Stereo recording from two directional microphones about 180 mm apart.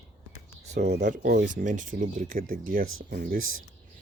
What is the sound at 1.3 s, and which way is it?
Speech, 50° right (ahead or behind).